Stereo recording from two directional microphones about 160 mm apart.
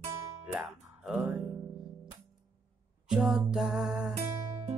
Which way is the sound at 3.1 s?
5° right (ahead or behind).